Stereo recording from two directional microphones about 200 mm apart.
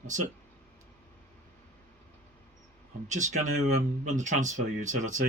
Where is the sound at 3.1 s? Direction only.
35° right (ahead or behind).